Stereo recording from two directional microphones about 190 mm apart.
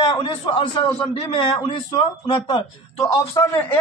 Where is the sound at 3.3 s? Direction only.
15° left (ahead or behind).